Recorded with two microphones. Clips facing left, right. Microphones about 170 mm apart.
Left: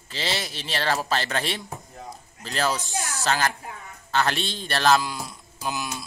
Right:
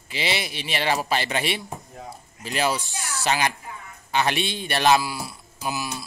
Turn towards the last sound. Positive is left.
turn(degrees=-5)  # may be behind; listen again after turning